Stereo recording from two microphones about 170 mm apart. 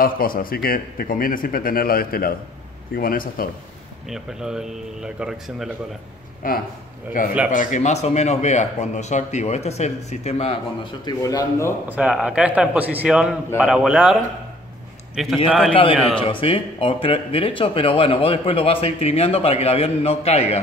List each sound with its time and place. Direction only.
0.0 s a man's voice: 55° left (ahead or behind)
4.1 s speech: 5° right (ahead or behind)
6.4 s speech: 55° left (ahead or behind); by 11.7 s 20° left (ahead or behind)
11.9 s speech: 5° right (ahead or behind)
15.1 s speech: centre (ahead or behind)
15.7 s speech: 30° left (ahead or behind)